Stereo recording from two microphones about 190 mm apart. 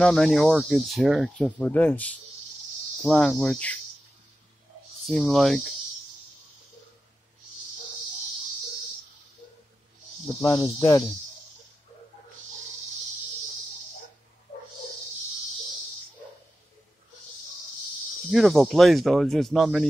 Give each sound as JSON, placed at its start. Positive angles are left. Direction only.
{"t": 0.0, "sound": "speech", "side_deg": 0}
{"t": 5.0, "sound": "speech", "side_deg": 0}
{"t": 10.8, "sound": "speech", "side_deg": 15}
{"t": 18.3, "sound": "speech", "side_deg": 0}